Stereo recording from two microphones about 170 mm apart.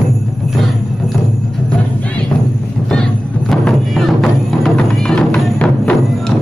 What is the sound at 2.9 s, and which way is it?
Music, 5° left (ahead or behind).